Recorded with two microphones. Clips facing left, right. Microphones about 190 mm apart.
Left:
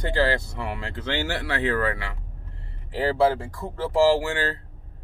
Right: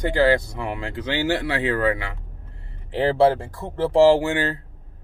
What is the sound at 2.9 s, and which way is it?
Speech, 25° right (ahead or behind).